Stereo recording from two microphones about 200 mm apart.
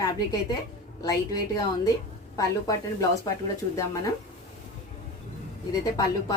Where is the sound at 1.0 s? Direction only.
20° left (ahead or behind).